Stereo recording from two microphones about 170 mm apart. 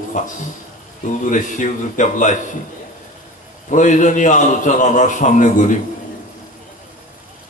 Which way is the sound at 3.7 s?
45° left (ahead or behind).